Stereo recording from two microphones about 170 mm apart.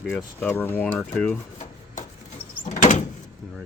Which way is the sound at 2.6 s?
50° left (ahead or behind).